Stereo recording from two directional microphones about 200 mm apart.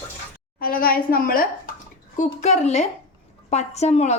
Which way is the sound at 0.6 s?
45° left (ahead or behind).